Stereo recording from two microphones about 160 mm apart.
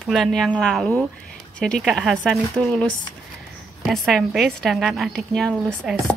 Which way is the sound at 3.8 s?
Centre (ahead or behind).